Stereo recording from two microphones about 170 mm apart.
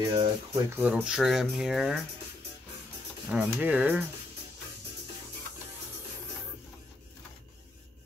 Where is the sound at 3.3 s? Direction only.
10° right (ahead or behind).